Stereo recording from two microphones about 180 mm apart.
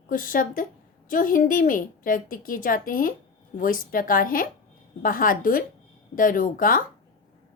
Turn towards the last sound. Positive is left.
turn(degrees=50)  # may be behind; listen again after turning